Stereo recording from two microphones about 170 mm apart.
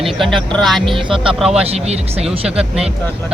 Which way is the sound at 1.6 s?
40° right (ahead or behind).